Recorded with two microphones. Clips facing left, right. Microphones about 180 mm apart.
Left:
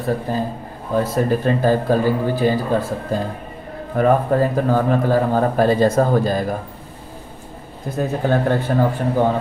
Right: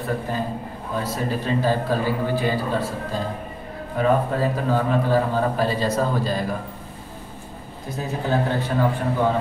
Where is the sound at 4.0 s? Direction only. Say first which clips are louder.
Left 5 dB; 50° left (ahead or behind).